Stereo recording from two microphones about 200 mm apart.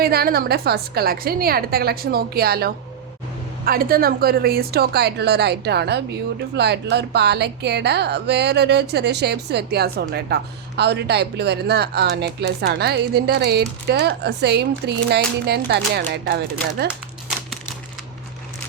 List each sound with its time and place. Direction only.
0.0 s a woman's voice: 50° right (ahead or behind)